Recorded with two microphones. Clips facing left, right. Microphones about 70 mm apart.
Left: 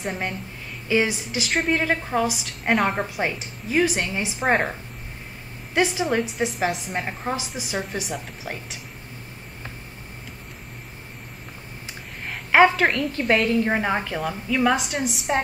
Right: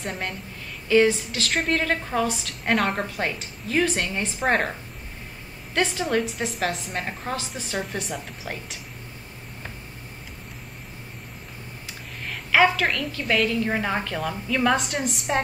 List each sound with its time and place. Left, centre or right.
0.0 s a woman's voice: centre
0.8 s a woman's voice: centre
1.5 s a woman's voice: centre
6.0 s a woman's voice: centre
12.3 s a sound: left
12.7 s a woman's voice: left
13.7 s a woman's voice: centre